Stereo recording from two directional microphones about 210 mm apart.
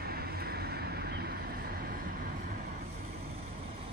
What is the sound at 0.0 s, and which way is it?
Vehicle, 50° right (ahead or behind).